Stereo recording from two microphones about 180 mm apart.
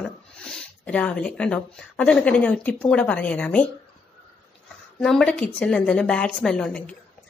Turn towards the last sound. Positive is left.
turn(degrees=5)  # may be behind; listen again after turning